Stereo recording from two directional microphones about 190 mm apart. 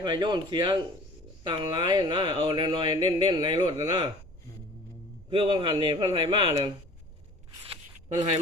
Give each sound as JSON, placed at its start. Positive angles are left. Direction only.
{"t": 0.0, "sound": "speech", "side_deg": -25}
{"t": 5.3, "sound": "speech", "side_deg": -25}